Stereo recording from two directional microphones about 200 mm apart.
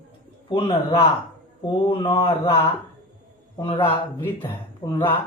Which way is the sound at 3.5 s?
25° left (ahead or behind).